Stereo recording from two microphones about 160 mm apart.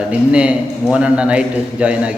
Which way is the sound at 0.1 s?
5° right (ahead or behind).